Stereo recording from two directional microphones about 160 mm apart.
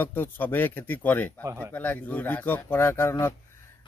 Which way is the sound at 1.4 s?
20° right (ahead or behind).